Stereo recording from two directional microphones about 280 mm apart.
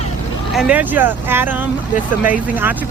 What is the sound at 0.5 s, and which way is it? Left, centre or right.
Speech, centre.